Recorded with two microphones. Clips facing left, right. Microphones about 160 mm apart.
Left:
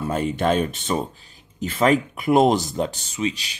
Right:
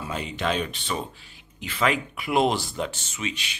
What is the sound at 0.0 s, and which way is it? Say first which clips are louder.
Speech: left 7 dB; 50° left (ahead or behind).